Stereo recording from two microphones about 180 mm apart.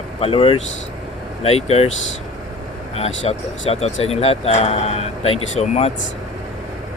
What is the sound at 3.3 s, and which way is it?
Speech, 35° left (ahead or behind).